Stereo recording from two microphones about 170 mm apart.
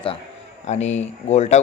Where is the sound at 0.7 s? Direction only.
40° left (ahead or behind).